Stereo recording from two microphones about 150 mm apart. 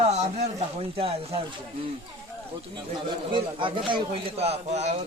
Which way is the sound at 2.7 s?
30° right (ahead or behind).